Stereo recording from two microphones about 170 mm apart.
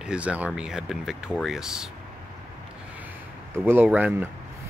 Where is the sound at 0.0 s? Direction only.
5° right (ahead or behind).